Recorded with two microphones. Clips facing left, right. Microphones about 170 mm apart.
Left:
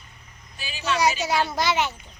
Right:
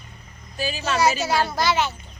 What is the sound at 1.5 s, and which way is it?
Speech, 20° left (ahead or behind).